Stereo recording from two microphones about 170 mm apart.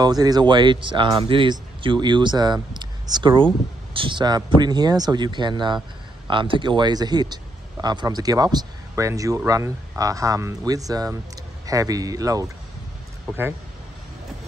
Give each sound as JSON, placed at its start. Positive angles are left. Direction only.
{"t": 0.0, "sound": "speech", "side_deg": -20}